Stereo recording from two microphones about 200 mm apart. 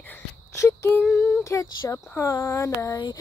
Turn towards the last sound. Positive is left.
turn(degrees=15)  # may be behind; listen again after turning